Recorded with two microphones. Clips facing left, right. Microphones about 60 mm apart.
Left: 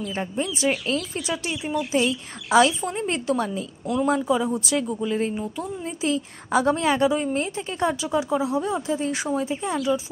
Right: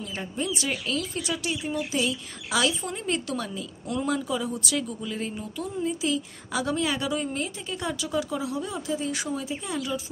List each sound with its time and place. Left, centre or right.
0.1 s speech: left